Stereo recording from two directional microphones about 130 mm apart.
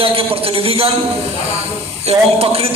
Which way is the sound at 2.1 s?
50° right (ahead or behind).